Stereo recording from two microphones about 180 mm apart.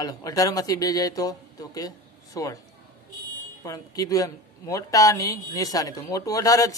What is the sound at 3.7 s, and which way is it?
Speech, 20° left (ahead or behind).